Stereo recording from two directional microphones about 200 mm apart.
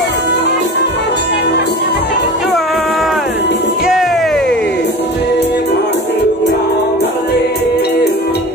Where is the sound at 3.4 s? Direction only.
60° left (ahead or behind).